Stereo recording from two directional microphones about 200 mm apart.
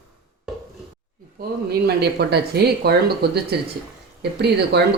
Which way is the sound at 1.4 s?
45° right (ahead or behind).